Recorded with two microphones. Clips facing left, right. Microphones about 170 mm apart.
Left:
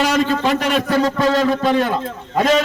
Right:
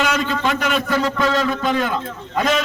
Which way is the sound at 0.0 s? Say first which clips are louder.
Left 3 dB; 35° left (ahead or behind).